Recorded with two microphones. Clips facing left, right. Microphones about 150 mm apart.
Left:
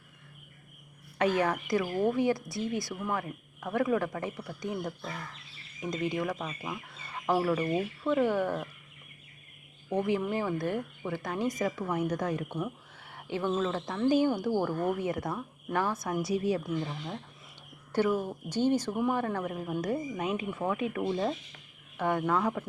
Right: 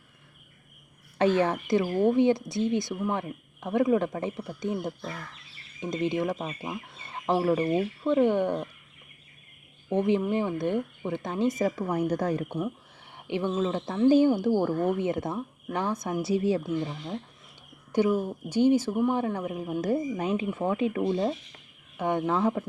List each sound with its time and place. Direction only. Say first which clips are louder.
1.2 s a woman's voice: right 4 dB; 30° right (ahead or behind)
9.9 s a woman's voice: right 4 dB; 25° right (ahead or behind)
12.5 s a woman's voice: right 4 dB; 15° right (ahead or behind)
17.9 s speech: right 3 dB; 10° right (ahead or behind)
19.8 s a woman's voice: right 6 dB; 30° right (ahead or behind)